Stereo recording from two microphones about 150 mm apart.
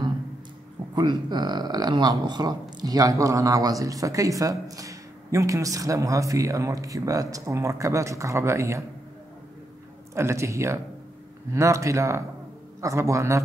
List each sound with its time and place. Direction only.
0.9 s speech: 30° right (ahead or behind)
10.1 s speech: 20° right (ahead or behind)